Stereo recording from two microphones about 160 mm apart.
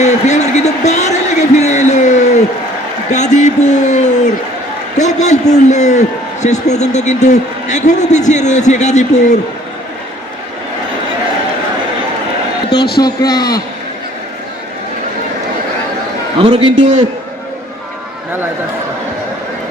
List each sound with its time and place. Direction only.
0.0 s a sound: 45° left (ahead or behind)
3.1 s a sound: 45° left (ahead or behind)
4.9 s a man's voice: 45° left (ahead or behind)
13.0 s a man's voice: 25° left (ahead or behind)
16.4 s a man's voice: 35° right (ahead or behind)
16.8 s a man's voice: 50° right (ahead or behind)